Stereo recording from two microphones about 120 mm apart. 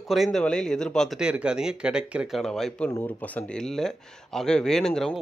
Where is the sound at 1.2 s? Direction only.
10° right (ahead or behind).